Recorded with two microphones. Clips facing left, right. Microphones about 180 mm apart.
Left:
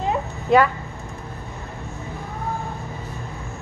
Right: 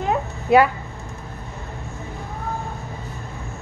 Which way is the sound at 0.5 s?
5° right (ahead or behind).